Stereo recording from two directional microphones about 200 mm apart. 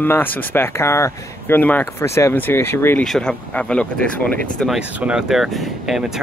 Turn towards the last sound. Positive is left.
turn(degrees=0)  # may be behind; listen again after turning